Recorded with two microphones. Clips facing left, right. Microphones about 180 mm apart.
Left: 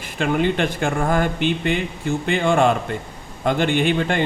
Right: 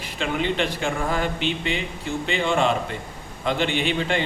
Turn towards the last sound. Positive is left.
turn(degrees=50)  # may be behind; listen again after turning